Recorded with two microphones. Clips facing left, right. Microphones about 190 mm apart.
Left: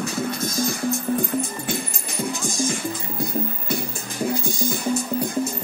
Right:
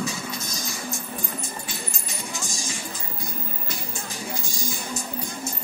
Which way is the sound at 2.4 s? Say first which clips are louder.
Left 10 dB; 55° left (ahead or behind).